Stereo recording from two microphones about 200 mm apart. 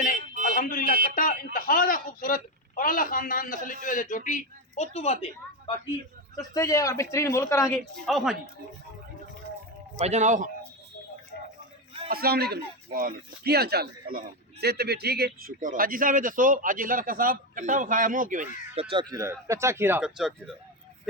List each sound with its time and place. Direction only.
0.5 s a sound: 45° left (ahead or behind)
1.5 s a man's voice: 45° left (ahead or behind)
6.3 s speech: 15° left (ahead or behind)
8.0 s a woman's voice: centre (ahead or behind)
10.0 s speech: 35° right (ahead or behind)
12.0 s speech: 50° right (ahead or behind)
18.9 s speech: 20° right (ahead or behind); by 20.6 s centre (ahead or behind)